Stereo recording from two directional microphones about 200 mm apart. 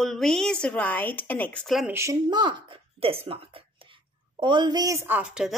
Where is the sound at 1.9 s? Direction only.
15° right (ahead or behind).